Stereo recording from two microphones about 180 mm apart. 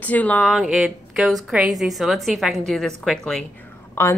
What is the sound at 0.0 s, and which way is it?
Speech, 10° left (ahead or behind).